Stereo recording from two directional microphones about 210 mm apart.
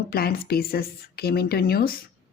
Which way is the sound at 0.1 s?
45° left (ahead or behind).